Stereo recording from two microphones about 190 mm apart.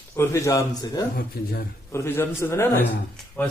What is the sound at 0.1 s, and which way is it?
Speech, 15° left (ahead or behind).